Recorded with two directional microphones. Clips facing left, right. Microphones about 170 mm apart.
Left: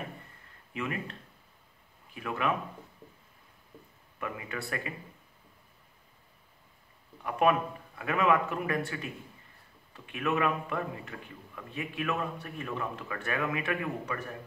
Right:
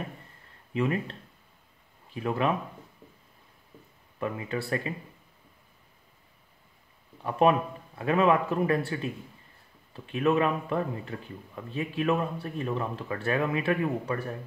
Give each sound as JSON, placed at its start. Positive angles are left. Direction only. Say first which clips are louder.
{"t": 0.7, "sound": "a man's voice", "louder": "right 7 dB", "side_deg": -30}
{"t": 2.1, "sound": "a man's voice", "louder": "right 4 dB", "side_deg": -30}
{"t": 4.2, "sound": "speech", "louder": "right 6 dB", "side_deg": -30}
{"t": 7.2, "sound": "a man's voice", "louder": "right 3 dB", "side_deg": -30}